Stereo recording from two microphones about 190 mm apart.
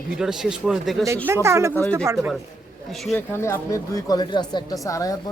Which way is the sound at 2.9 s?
Centre (ahead or behind).